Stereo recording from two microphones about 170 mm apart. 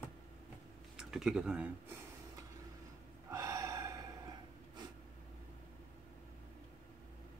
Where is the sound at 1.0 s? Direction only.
5° right (ahead or behind).